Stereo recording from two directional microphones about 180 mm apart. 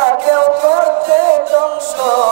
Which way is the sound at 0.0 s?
20° right (ahead or behind).